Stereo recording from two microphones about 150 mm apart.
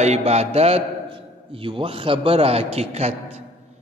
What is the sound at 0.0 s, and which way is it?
A man's voice, 45° right (ahead or behind).